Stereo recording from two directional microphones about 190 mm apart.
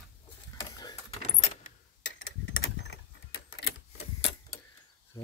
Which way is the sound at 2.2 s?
90° left.